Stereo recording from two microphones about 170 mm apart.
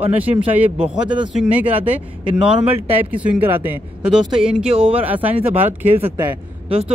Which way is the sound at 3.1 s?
10° right (ahead or behind).